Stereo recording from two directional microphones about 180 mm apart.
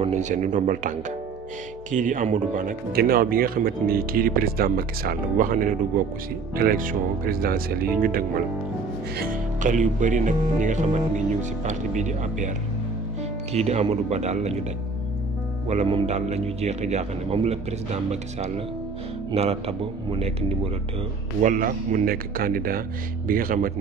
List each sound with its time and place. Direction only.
0.0 s speech: 40° right (ahead or behind)
13.5 s a man's voice: 35° right (ahead or behind)
15.7 s a man's voice: 40° right (ahead or behind)
21.4 s speech: 50° right (ahead or behind)